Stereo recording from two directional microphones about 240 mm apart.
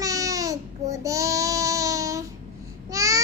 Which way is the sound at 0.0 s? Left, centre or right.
Centre.